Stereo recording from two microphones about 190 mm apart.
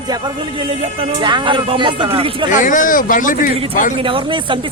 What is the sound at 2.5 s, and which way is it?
Speech, 45° left (ahead or behind).